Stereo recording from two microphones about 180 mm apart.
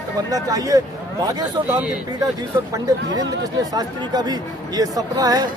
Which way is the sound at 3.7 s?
20° right (ahead or behind).